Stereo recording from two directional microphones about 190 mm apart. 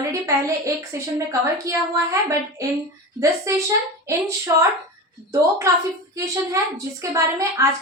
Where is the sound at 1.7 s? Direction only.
15° right (ahead or behind).